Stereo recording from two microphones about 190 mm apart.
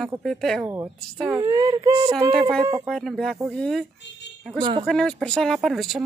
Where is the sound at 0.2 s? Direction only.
Centre (ahead or behind).